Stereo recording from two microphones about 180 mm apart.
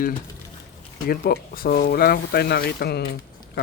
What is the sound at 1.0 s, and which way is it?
Speech, 55° left (ahead or behind).